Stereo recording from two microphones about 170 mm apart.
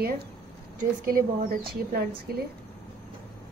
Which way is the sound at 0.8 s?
60° right (ahead or behind).